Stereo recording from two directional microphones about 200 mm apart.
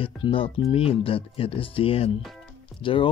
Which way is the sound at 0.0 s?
25° left (ahead or behind).